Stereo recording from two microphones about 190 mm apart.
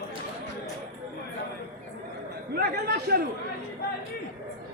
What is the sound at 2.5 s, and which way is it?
Speech, 55° right (ahead or behind).